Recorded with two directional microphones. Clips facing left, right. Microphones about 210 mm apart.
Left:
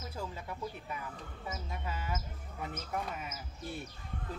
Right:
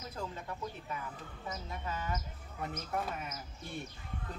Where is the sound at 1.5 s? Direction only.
10° left (ahead or behind).